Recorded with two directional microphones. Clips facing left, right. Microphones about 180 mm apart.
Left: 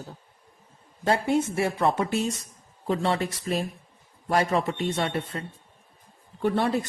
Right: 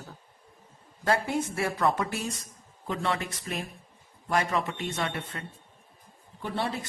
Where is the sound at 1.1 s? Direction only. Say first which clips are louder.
Left 4 dB; 25° left (ahead or behind).